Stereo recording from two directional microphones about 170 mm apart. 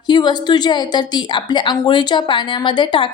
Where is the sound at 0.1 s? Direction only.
25° left (ahead or behind).